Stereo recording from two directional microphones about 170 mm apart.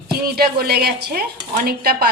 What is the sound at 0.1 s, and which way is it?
A woman's voice, 65° right (ahead or behind).